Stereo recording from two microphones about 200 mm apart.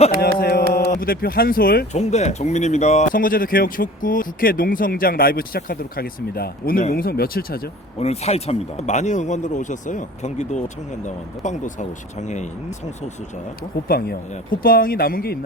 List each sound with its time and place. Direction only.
0.2 s a sound: 50° left (ahead or behind)
0.7 s speech: 45° left (ahead or behind)
1.9 s speech: 35° left (ahead or behind)
7.9 s speech: 30° left (ahead or behind)
13.8 s speech: 50° left (ahead or behind)